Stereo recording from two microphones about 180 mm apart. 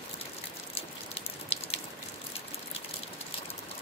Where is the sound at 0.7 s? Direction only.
35° left (ahead or behind).